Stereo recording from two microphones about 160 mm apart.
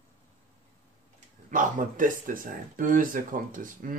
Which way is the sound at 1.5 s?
55° right (ahead or behind).